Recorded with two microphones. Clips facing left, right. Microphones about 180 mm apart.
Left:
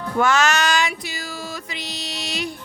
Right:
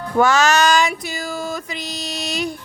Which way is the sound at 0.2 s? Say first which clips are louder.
Right 4 dB; 40° right (ahead or behind).